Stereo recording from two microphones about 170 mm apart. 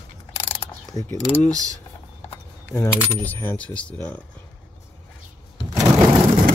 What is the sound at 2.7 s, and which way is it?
Speech, 10° left (ahead or behind).